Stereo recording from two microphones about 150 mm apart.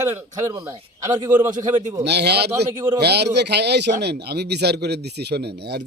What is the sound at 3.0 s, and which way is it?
Speech, 90° right.